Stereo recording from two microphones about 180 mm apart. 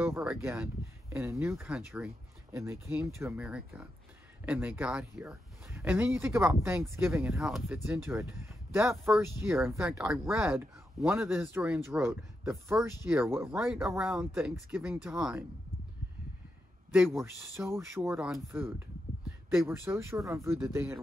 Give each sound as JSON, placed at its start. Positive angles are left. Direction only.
{"t": 0.0, "sound": "speech", "side_deg": -15}
{"t": 7.8, "sound": "speech", "side_deg": -15}
{"t": 8.9, "sound": "speech", "side_deg": 0}
{"t": 13.7, "sound": "speech", "side_deg": 0}
{"t": 16.9, "sound": "speech", "side_deg": -5}
{"t": 18.0, "sound": "speech", "side_deg": -5}